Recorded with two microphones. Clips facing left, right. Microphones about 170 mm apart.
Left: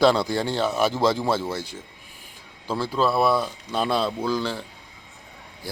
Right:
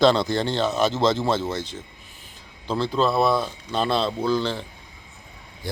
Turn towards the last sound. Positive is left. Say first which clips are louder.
# right 2 dB
turn(degrees=10)  # may be behind; listen again after turning